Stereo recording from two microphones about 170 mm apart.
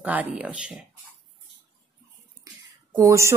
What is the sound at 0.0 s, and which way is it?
Speech, 10° right (ahead or behind).